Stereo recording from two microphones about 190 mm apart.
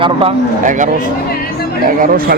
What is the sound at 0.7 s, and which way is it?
Speech, 40° right (ahead or behind).